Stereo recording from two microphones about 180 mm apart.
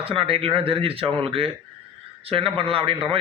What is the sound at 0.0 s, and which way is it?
A man's voice, 30° right (ahead or behind).